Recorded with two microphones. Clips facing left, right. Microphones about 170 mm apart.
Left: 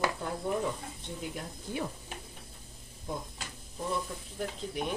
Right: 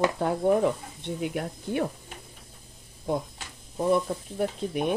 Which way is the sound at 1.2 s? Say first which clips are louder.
Right 10 dB; 65° right (ahead or behind).